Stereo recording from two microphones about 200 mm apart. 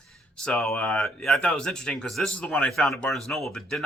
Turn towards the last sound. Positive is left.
turn(degrees=5)  # may be behind; listen again after turning